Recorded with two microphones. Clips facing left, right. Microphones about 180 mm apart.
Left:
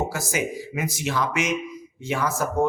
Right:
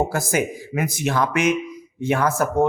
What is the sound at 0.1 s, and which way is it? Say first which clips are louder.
Speech: right 4 dB; 55° right (ahead or behind).